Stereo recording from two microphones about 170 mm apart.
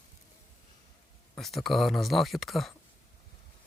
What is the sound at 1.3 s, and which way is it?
Speech, centre (ahead or behind).